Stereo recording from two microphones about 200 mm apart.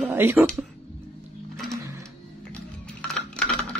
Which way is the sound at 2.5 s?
5° left (ahead or behind).